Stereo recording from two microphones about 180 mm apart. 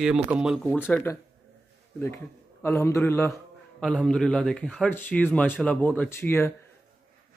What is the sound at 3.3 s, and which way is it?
Speech, centre (ahead or behind).